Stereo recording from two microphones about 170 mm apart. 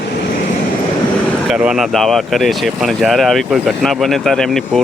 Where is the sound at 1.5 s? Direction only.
5° right (ahead or behind).